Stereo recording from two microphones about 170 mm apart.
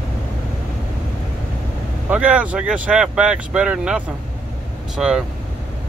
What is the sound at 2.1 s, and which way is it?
Speech, 10° right (ahead or behind).